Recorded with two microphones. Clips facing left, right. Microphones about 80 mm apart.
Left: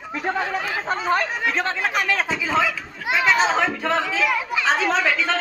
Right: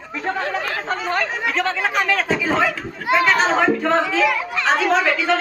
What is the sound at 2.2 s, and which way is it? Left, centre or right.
Speech, right.